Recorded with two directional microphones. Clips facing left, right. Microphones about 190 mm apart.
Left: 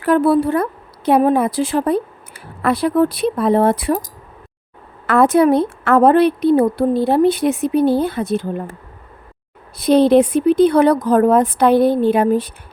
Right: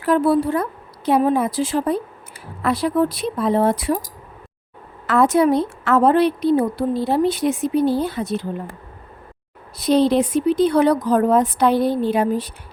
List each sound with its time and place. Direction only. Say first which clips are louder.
0.0 s a woman's voice: left 3 dB; 60° left (ahead or behind)
5.0 s a woman's voice: left 3 dB; 60° left (ahead or behind)
9.7 s a woman's voice: left 5 dB; 60° left (ahead or behind)